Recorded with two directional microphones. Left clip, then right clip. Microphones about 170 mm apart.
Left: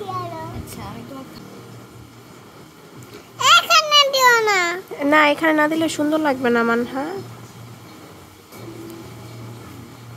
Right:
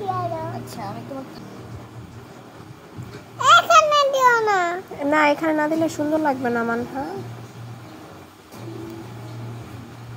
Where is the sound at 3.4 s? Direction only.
50° left (ahead or behind).